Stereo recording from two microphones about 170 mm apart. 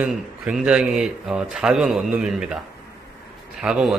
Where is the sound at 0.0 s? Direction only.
5° right (ahead or behind).